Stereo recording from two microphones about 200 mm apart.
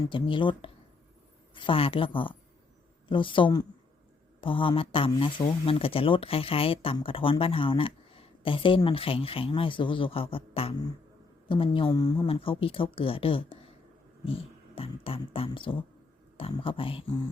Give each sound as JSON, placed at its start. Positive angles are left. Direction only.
{"t": 0.0, "sound": "speech", "side_deg": 25}
{"t": 14.8, "sound": "speech", "side_deg": 25}